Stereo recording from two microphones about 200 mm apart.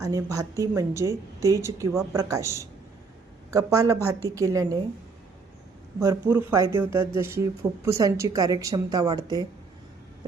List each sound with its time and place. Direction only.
0.0 s a woman's voice: 15° right (ahead or behind)
6.0 s a woman's voice: 10° right (ahead or behind)